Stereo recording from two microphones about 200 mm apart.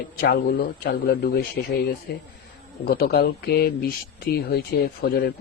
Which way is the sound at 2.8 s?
50° left (ahead or behind).